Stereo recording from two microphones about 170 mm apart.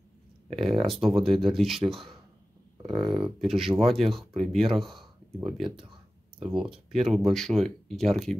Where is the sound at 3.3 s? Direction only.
Centre (ahead or behind).